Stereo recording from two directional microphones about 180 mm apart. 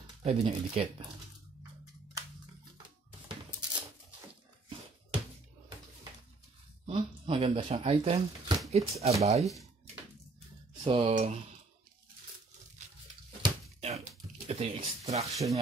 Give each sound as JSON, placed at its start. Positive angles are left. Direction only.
{"t": 0.2, "sound": "speech", "side_deg": -35}
{"t": 6.9, "sound": "speech", "side_deg": -30}
{"t": 10.7, "sound": "speech", "side_deg": -25}
{"t": 13.4, "sound": "a sound", "side_deg": -35}